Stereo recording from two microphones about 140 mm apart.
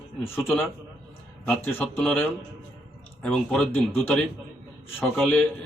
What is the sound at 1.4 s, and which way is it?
Speech, 10° left (ahead or behind).